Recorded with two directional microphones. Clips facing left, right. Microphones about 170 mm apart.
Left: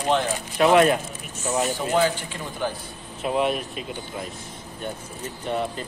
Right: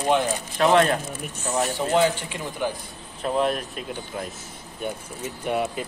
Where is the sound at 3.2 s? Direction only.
5° left (ahead or behind).